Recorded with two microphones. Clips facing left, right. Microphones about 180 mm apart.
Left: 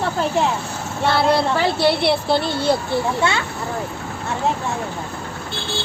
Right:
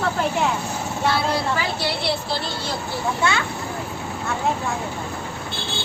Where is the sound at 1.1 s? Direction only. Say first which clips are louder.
Left 8 dB; 65° left (ahead or behind).